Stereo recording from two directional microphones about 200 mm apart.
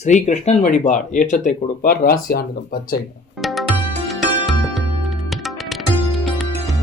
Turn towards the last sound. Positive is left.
turn(degrees=0)  # may be behind; listen again after turning